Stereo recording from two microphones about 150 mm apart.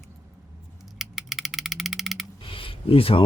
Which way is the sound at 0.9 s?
Centre (ahead or behind).